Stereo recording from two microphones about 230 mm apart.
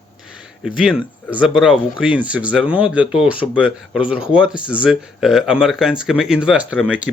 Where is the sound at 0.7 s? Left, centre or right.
Centre.